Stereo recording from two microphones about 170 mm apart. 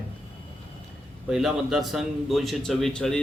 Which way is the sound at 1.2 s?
Centre (ahead or behind).